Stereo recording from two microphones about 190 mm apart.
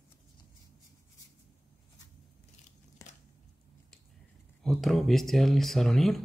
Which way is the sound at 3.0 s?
15° left (ahead or behind).